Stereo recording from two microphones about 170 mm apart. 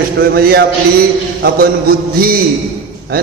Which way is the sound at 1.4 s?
60° right (ahead or behind).